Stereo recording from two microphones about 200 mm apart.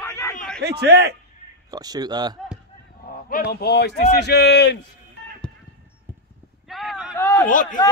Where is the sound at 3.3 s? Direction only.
50° left (ahead or behind).